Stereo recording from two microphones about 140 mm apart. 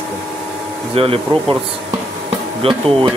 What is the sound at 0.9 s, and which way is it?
Speech, 40° right (ahead or behind).